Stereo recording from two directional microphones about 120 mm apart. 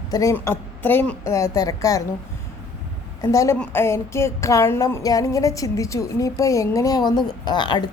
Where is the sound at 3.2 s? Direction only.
25° left (ahead or behind).